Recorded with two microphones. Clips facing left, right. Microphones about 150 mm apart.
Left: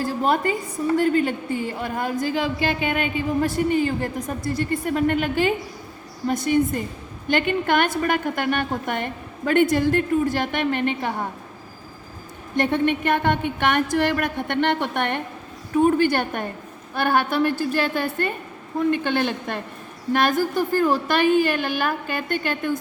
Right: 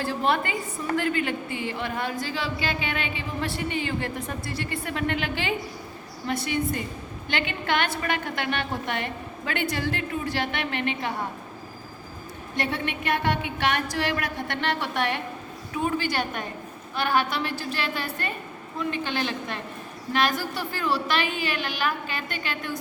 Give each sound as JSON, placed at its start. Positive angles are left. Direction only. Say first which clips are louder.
{"t": 0.0, "sound": "a woman's voice", "louder": "left 4 dB", "side_deg": 40}
{"t": 12.5, "sound": "speech", "louder": "left 9 dB", "side_deg": 50}